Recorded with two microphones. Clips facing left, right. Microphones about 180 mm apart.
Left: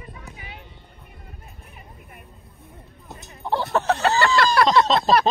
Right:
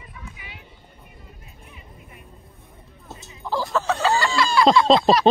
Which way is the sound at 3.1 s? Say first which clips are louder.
Left 1 dB; 60° left (ahead or behind).